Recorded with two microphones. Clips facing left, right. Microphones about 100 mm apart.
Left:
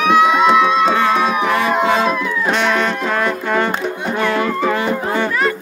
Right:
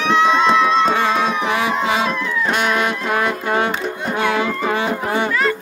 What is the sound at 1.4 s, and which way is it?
Music, 15° right (ahead or behind).